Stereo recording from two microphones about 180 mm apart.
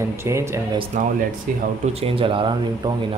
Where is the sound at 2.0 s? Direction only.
30° right (ahead or behind).